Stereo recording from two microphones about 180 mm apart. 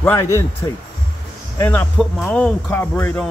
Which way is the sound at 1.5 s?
15° left (ahead or behind).